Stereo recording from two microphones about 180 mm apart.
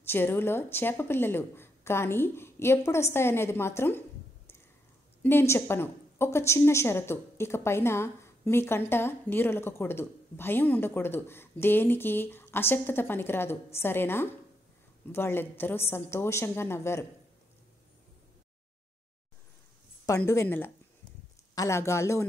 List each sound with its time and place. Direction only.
0.0 s a woman's voice: 10° left (ahead or behind)
5.2 s a woman's voice: 15° left (ahead or behind)
20.1 s a woman's voice: 15° left (ahead or behind)